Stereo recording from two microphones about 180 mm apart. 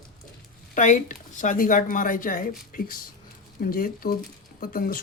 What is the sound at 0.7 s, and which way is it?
Speech, 45° left (ahead or behind).